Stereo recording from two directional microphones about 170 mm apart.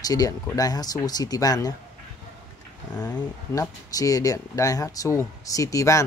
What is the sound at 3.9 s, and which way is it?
Speech, 20° left (ahead or behind).